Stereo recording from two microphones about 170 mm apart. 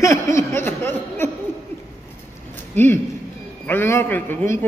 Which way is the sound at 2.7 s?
10° left (ahead or behind).